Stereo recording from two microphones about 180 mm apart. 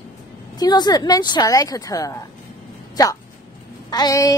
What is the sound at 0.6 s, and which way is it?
A woman's voice, 25° left (ahead or behind).